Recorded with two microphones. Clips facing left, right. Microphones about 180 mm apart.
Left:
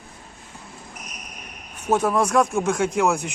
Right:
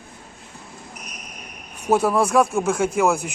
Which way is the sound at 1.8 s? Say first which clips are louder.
Right 2 dB; 10° right (ahead or behind).